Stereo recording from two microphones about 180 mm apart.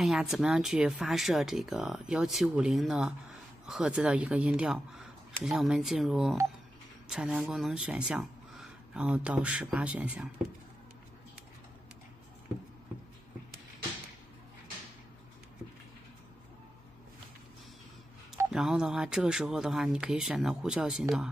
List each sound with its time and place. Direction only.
0.0 s speech: centre (ahead or behind)
18.5 s speech: 5° right (ahead or behind)